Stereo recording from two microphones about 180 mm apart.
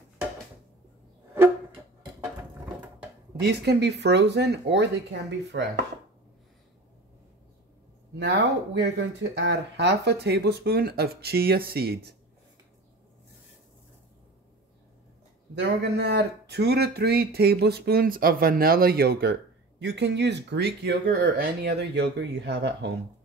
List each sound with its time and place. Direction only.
3.3 s speech: 70° right (ahead or behind)
8.2 s speech: 70° right (ahead or behind)
15.6 s speech: 65° right (ahead or behind)
19.8 s speech: 70° right (ahead or behind)